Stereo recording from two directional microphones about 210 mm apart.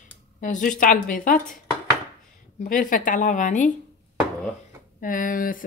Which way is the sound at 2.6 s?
40° left (ahead or behind).